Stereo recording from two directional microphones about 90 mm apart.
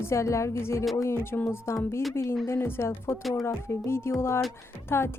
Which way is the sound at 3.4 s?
30° left (ahead or behind).